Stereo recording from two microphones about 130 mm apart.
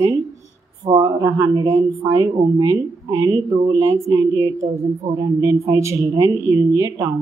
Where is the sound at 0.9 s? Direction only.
30° right (ahead or behind).